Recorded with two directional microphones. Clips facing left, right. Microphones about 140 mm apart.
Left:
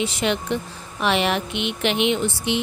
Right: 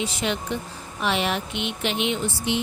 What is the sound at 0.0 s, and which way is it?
Speech, 70° left (ahead or behind).